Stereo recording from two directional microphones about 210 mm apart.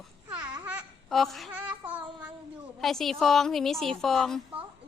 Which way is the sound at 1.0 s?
Centre (ahead or behind).